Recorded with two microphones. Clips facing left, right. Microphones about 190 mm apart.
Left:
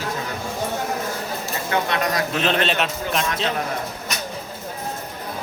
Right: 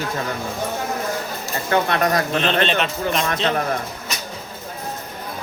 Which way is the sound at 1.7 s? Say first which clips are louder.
Right 4 dB; 50° right (ahead or behind).